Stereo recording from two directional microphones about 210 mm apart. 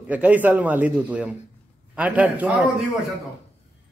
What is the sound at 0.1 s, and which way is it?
Speech, 5° right (ahead or behind).